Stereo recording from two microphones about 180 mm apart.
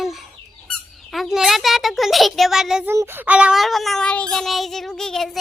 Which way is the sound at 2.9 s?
15° right (ahead or behind).